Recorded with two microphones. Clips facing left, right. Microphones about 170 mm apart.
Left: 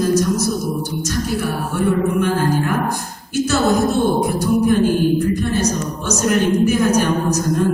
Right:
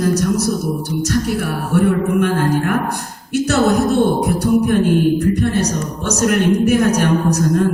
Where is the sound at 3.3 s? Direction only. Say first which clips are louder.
Right 2 dB; 65° right (ahead or behind).